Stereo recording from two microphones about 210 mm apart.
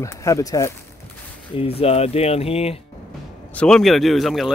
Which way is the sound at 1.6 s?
30° left (ahead or behind).